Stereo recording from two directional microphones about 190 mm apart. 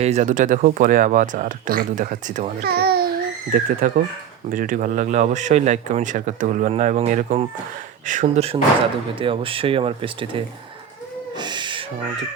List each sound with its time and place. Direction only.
0.0 s speech: 35° right (ahead or behind)
2.6 s babbling: 55° right (ahead or behind)
3.5 s speech: 45° right (ahead or behind); by 10.4 s 30° right (ahead or behind)
11.3 s owl: 25° right (ahead or behind)